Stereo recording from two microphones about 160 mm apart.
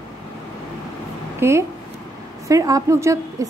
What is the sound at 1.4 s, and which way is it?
A woman's voice, 15° right (ahead or behind).